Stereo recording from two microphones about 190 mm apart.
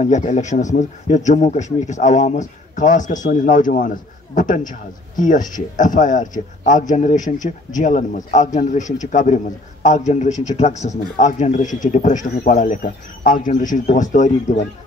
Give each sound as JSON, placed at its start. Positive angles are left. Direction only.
{"t": 0.0, "sound": "a man's voice", "side_deg": 40}